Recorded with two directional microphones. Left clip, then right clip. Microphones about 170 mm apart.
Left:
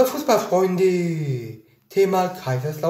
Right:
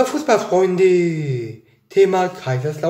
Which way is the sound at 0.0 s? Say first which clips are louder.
Right 2 dB; 20° right (ahead or behind).